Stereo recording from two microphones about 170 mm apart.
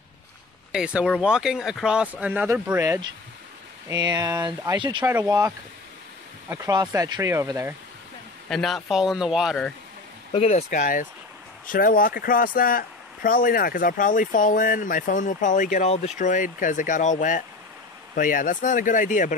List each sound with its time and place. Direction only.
0.7 s speech: 5° right (ahead or behind); by 5.0 s 25° right (ahead or behind)
5.0 s speech: 15° right (ahead or behind)
6.5 s speech: 20° right (ahead or behind)
8.5 s speech: centre (ahead or behind)
10.3 s a man's voice: 40° left (ahead or behind)